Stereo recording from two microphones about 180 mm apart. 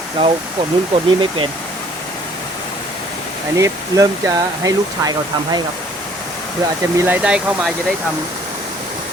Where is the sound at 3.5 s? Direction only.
15° right (ahead or behind).